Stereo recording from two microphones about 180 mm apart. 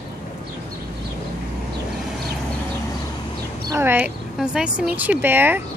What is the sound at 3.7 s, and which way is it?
Speech, 10° right (ahead or behind).